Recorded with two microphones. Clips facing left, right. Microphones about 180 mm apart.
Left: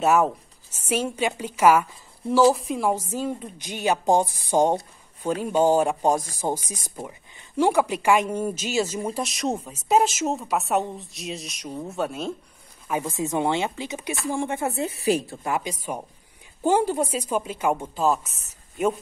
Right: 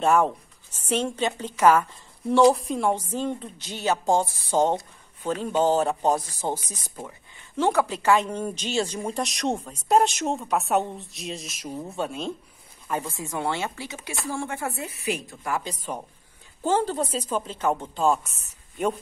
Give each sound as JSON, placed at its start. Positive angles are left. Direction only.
{"t": 0.0, "sound": "a woman's voice", "side_deg": 5}
{"t": 13.1, "sound": "speech", "side_deg": 20}
{"t": 15.5, "sound": "a woman's voice", "side_deg": 10}